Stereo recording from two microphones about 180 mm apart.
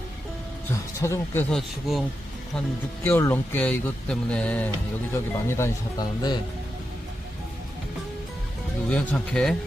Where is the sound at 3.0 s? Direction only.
10° left (ahead or behind).